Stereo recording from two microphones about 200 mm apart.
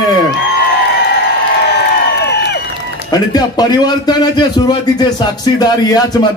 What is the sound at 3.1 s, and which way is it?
A man's voice, 20° left (ahead or behind).